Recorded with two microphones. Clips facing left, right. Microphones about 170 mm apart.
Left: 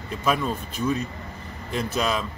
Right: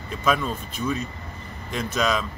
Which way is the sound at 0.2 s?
5° left (ahead or behind).